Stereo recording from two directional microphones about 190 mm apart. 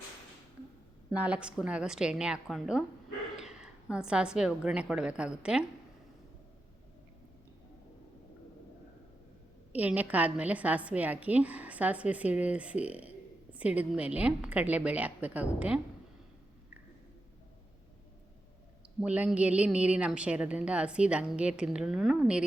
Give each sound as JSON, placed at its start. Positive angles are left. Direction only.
{"t": 1.1, "sound": "a woman's voice", "side_deg": -5}
{"t": 9.7, "sound": "a woman's voice", "side_deg": -10}
{"t": 18.9, "sound": "a woman's voice", "side_deg": -5}